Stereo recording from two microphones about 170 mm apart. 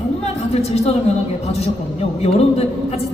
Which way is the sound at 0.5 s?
40° left (ahead or behind).